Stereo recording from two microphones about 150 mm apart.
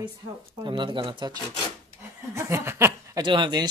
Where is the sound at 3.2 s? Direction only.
30° right (ahead or behind).